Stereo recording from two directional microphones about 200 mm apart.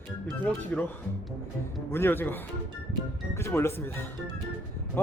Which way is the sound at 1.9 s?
10° left (ahead or behind).